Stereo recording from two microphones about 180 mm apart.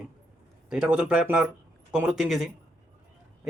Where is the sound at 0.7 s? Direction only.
5° right (ahead or behind).